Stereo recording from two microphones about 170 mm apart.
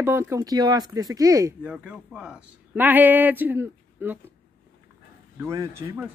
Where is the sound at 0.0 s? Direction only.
15° right (ahead or behind).